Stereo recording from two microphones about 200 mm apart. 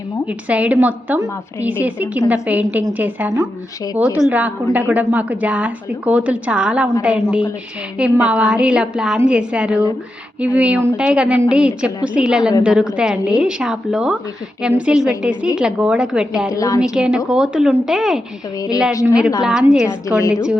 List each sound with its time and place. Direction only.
0.3 s a woman's voice: 5° right (ahead or behind)
16.5 s a woman's voice: 15° left (ahead or behind)
16.8 s a woman's voice: 5° right (ahead or behind)
19.9 s a woman's voice: 15° left (ahead or behind)
20.3 s a woman's voice: 5° right (ahead or behind)